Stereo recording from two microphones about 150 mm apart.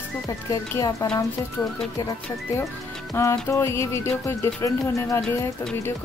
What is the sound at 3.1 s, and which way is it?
Speech, 20° left (ahead or behind).